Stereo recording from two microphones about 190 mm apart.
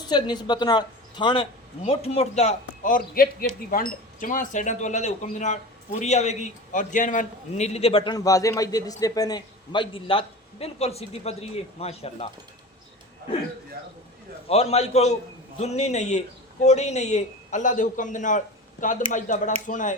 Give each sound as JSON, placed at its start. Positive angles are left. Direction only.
{"t": 0.0, "sound": "a woman's voice", "side_deg": 20}
{"t": 14.4, "sound": "a man's voice", "side_deg": 30}